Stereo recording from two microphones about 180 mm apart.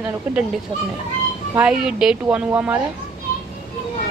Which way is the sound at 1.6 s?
5° right (ahead or behind).